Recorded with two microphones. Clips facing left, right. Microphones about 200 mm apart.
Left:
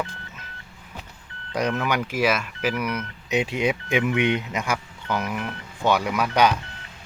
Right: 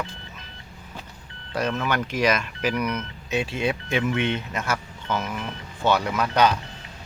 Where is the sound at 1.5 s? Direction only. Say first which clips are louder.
Left 1 dB; 15° left (ahead or behind).